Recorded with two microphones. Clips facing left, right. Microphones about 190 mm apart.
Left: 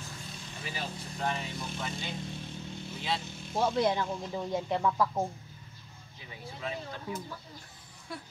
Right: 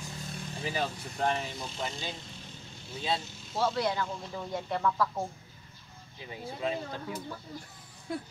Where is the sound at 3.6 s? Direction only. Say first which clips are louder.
Left 2 dB; 20° left (ahead or behind).